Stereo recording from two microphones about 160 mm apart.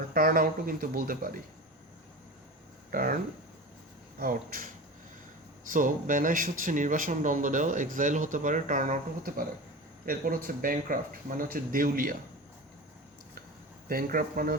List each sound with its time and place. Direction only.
0.1 s speech: 65° right (ahead or behind)
2.9 s speech: 60° right (ahead or behind)
4.2 s speech: 60° right (ahead or behind)
5.7 s speech: 55° right (ahead or behind)
13.8 s speech: 65° right (ahead or behind)